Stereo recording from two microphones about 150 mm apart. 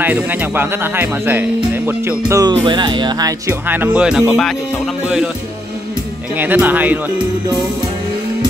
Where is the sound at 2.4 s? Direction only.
30° right (ahead or behind).